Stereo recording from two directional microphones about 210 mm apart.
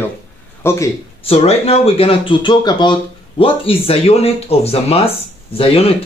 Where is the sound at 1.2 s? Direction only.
30° left (ahead or behind).